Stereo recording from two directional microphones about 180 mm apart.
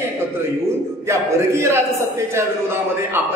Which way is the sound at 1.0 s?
15° right (ahead or behind).